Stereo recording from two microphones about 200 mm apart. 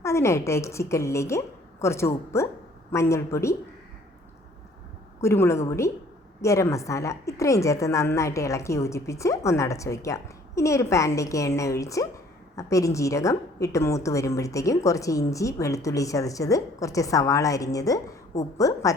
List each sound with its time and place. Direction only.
0.0 s a woman's voice: 15° left (ahead or behind)
5.2 s a woman's voice: 15° left (ahead or behind)